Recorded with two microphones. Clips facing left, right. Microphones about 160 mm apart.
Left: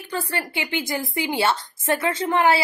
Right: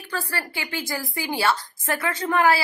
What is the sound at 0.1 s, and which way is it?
Speech, 20° left (ahead or behind).